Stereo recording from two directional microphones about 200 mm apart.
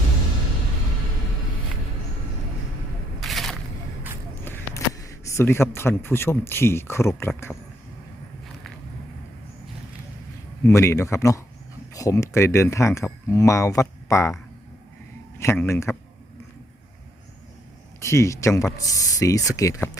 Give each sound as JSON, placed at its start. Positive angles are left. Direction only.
{"t": 3.2, "sound": "a sound", "side_deg": 0}
{"t": 4.4, "sound": "speech", "side_deg": 15}
{"t": 10.7, "sound": "speech", "side_deg": 15}
{"t": 15.4, "sound": "speech", "side_deg": 10}
{"t": 18.0, "sound": "speech", "side_deg": 15}